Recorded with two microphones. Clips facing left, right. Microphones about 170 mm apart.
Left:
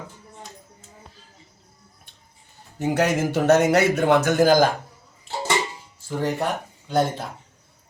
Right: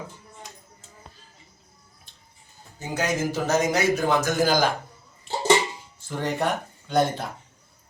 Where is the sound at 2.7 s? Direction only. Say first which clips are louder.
Left 6 dB; 70° left (ahead or behind); by 4.7 s 50° left (ahead or behind).